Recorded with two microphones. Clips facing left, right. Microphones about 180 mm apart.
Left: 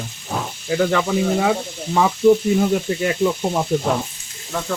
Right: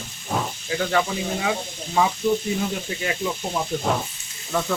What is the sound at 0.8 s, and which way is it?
Speech, 55° left (ahead or behind).